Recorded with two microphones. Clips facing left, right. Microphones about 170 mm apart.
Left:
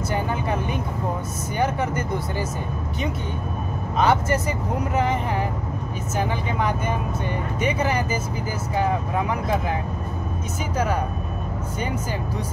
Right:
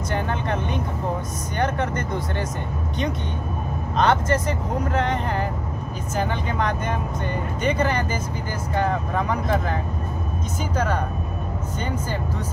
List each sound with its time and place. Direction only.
0.1 s speech: 10° left (ahead or behind)
4.0 s speech: 10° left (ahead or behind)
7.6 s speech: 5° left (ahead or behind)